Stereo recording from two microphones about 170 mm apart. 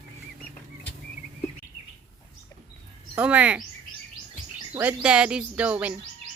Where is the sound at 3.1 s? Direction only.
10° right (ahead or behind).